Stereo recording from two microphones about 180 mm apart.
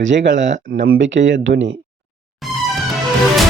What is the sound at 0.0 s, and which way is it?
Speech, 90° right.